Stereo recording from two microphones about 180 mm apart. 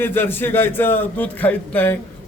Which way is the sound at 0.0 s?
10° left (ahead or behind).